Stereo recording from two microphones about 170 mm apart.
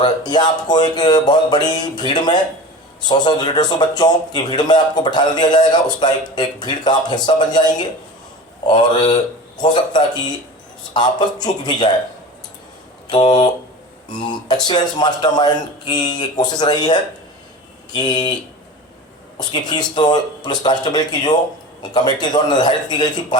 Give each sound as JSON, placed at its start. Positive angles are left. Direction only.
{"t": 0.0, "sound": "a man's voice", "side_deg": 25}
{"t": 13.1, "sound": "a man's voice", "side_deg": 25}
{"t": 19.4, "sound": "a man's voice", "side_deg": 25}